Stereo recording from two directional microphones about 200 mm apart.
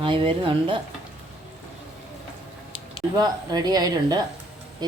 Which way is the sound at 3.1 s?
20° right (ahead or behind).